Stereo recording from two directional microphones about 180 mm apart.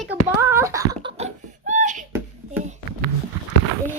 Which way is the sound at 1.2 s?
45° right (ahead or behind).